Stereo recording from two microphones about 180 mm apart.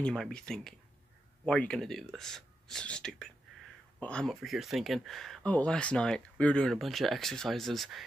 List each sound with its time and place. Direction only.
0.0 s speech: 5° left (ahead or behind)